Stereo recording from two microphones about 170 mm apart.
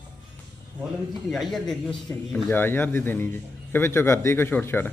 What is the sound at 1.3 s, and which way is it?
A man's voice, centre (ahead or behind).